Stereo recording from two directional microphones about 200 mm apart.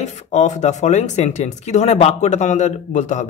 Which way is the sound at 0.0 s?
35° left (ahead or behind).